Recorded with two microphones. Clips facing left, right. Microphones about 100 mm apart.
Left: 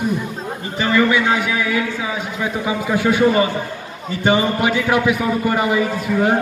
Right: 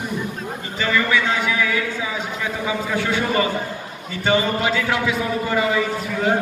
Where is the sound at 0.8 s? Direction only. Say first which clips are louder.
Left 4 dB; 20° left (ahead or behind).